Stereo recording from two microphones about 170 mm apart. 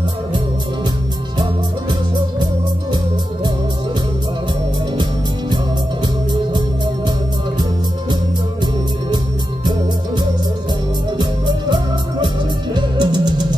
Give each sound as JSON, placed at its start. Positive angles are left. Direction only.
{"t": 11.1, "sound": "music", "side_deg": -25}